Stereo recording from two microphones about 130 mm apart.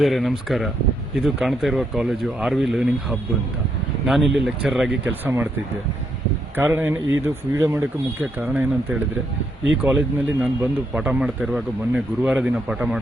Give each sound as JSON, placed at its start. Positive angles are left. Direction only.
{"t": 0.0, "sound": "speech", "side_deg": 0}
{"t": 5.2, "sound": "speech", "side_deg": -15}
{"t": 6.7, "sound": "speech", "side_deg": -15}